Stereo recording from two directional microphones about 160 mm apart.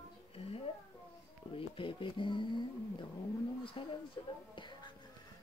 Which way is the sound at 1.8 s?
30° left (ahead or behind).